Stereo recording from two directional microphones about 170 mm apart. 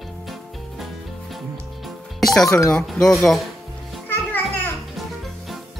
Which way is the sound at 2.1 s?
Centre (ahead or behind).